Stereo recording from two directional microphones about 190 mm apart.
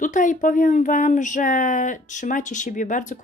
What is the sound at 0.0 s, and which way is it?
Speech, 45° left (ahead or behind).